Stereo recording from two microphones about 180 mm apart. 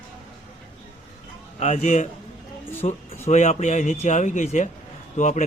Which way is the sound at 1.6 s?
40° left (ahead or behind).